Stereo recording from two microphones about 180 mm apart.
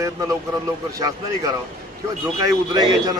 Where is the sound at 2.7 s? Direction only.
20° right (ahead or behind).